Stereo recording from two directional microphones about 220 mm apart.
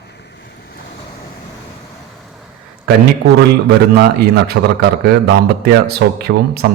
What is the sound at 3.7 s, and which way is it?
A man's voice, 45° right (ahead or behind).